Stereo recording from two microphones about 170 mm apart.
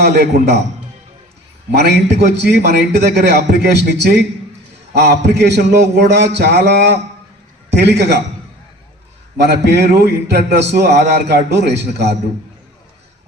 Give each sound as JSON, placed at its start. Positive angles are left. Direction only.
{"t": 0.3, "sound": "a man's voice", "side_deg": -65}
{"t": 1.7, "sound": "a man's voice", "side_deg": -75}
{"t": 2.6, "sound": "a man's voice", "side_deg": -70}
{"t": 9.4, "sound": "a man's voice", "side_deg": -75}
{"t": 10.8, "sound": "a man's voice", "side_deg": -40}
{"t": 11.3, "sound": "a man's voice", "side_deg": -85}